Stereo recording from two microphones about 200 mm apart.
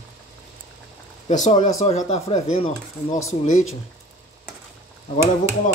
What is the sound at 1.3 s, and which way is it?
Speech, 40° left (ahead or behind).